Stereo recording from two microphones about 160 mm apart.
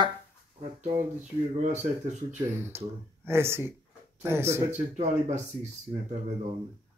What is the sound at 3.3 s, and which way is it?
Speech, 15° right (ahead or behind).